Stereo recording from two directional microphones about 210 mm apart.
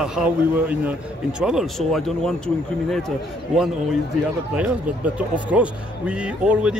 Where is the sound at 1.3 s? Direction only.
5° right (ahead or behind).